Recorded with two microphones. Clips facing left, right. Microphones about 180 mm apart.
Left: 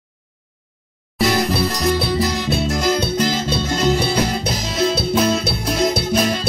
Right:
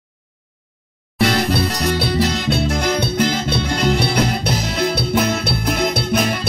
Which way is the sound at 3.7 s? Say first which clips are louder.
Left 1 dB; 60° right (ahead or behind).